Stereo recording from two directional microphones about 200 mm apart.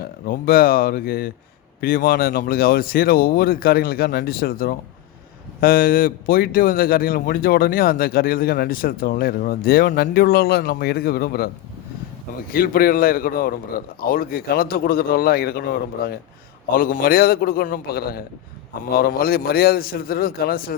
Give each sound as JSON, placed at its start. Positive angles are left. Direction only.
{"t": 0.0, "sound": "speech", "side_deg": 50}